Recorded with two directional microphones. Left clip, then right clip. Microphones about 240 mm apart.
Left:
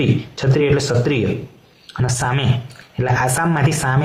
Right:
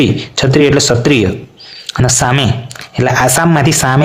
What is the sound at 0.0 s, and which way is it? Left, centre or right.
Speech, right.